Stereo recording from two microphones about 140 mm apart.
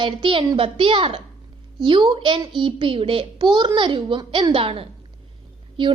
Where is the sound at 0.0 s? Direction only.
35° right (ahead or behind).